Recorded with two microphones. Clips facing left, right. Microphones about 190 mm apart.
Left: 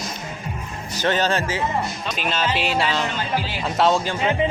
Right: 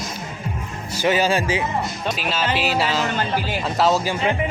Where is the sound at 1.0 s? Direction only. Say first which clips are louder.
Right 2 dB; 10° right (ahead or behind).